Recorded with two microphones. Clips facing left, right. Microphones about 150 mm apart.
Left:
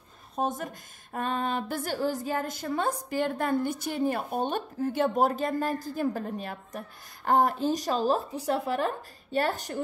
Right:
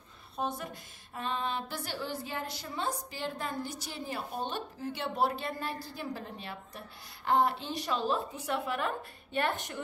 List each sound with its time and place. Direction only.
0.4 s a woman's voice: 45° left (ahead or behind)